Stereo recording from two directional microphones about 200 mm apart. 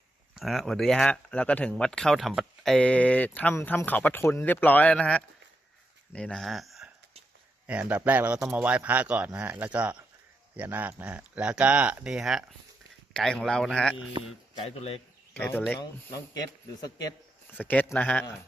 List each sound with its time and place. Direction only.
0.3 s speech: centre (ahead or behind)
14.6 s speech: 30° left (ahead or behind)
15.3 s speech: 10° left (ahead or behind)